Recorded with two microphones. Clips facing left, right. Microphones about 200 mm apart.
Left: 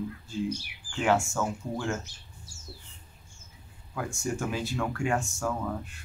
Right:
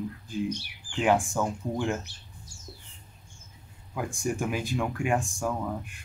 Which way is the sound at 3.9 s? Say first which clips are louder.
Right 2 dB; 15° right (ahead or behind).